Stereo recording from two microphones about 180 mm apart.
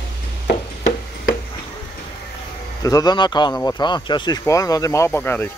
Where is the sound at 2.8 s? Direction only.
20° left (ahead or behind).